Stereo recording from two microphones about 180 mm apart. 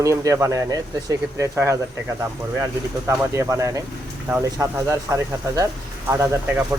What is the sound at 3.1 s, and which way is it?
Speech, 15° right (ahead or behind).